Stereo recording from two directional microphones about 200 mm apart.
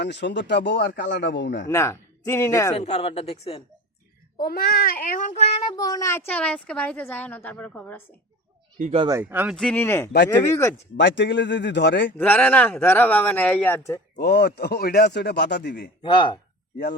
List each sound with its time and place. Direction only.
0.0 s speech: 60° left (ahead or behind)
1.7 s speech: 15° left (ahead or behind)
2.7 s speech: 30° left (ahead or behind)
4.4 s a child's voice: 50° left (ahead or behind); by 8.0 s 10° left (ahead or behind)
8.8 s speech: 30° right (ahead or behind)
9.2 s speech: 5° right (ahead or behind)
9.6 s a child's voice: 5° left (ahead or behind)
10.9 s speech: 65° left (ahead or behind)
12.1 s a child's voice: 10° left (ahead or behind)
14.2 s speech: 55° left (ahead or behind)
16.0 s speech: 25° left (ahead or behind)